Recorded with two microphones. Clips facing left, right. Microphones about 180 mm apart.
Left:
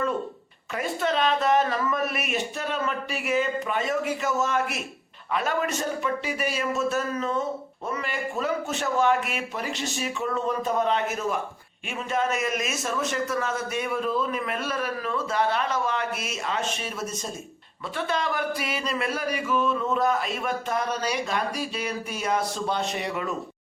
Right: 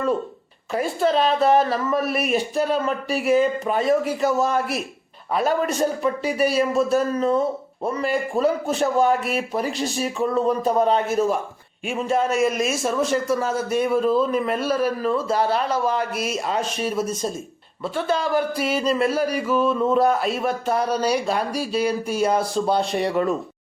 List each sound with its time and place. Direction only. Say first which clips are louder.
0.7 s speech: right 6 dB; 35° right (ahead or behind)
20.1 s speech: right 5 dB; 5° right (ahead or behind)
20.4 s speech: right 5 dB; 35° right (ahead or behind)